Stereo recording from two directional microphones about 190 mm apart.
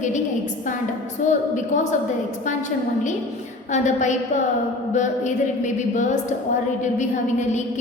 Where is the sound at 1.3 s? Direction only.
40° left (ahead or behind).